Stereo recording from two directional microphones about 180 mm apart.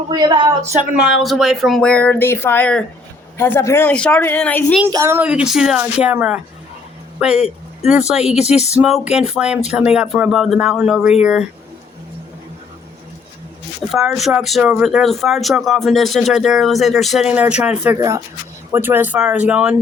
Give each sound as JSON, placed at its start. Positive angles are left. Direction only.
{"t": 0.1, "sound": "speech", "side_deg": -25}
{"t": 1.0, "sound": "speech", "side_deg": 0}
{"t": 4.9, "sound": "speech", "side_deg": -15}
{"t": 13.9, "sound": "speech", "side_deg": 0}